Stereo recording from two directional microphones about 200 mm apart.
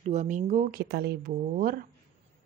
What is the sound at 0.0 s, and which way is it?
A woman's voice, 35° right (ahead or behind).